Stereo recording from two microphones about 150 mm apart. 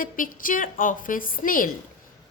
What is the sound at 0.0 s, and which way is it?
A woman's voice, 65° left (ahead or behind).